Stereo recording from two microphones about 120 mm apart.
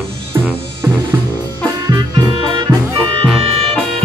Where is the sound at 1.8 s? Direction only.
35° right (ahead or behind).